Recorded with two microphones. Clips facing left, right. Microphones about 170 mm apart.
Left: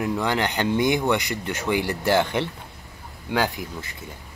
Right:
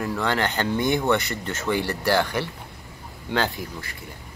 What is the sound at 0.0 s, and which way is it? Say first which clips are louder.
Speech: left 1 dB; 15° left (ahead or behind).